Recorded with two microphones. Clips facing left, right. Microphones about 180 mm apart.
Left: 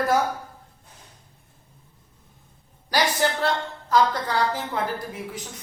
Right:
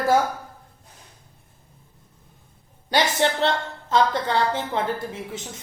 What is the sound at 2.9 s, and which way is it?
A woman's voice, 25° right (ahead or behind).